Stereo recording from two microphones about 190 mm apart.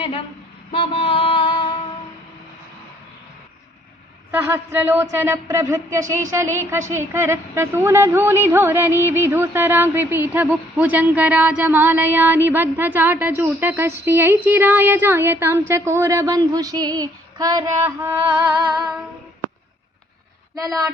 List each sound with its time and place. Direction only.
0.0 s speech: 30° left (ahead or behind)
0.7 s a sound: 30° left (ahead or behind)
4.3 s a woman's voice: 10° right (ahead or behind)